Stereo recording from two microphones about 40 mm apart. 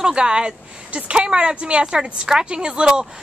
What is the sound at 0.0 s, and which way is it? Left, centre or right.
A woman's voice, centre.